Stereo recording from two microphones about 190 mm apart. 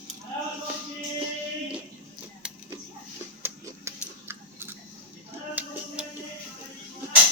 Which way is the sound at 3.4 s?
10° right (ahead or behind).